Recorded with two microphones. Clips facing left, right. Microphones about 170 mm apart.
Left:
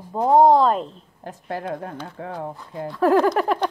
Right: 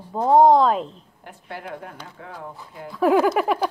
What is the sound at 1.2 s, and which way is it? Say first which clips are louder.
Speech: left 7 dB; 35° left (ahead or behind).